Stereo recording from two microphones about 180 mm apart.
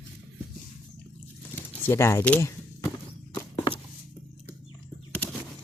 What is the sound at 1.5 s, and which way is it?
Speech, 10° left (ahead or behind).